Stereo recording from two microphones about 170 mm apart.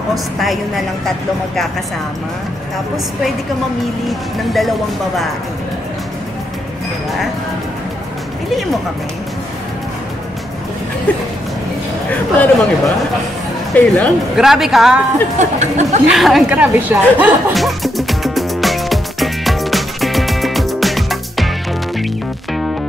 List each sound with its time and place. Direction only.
0.1 s a woman's voice: centre (ahead or behind)
4.1 s a woman's voice: centre (ahead or behind)
12.1 s speech: 10° left (ahead or behind)
14.3 s a woman's voice: centre (ahead or behind)
15.3 s speech: 40° right (ahead or behind)
16.1 s music: centre (ahead or behind)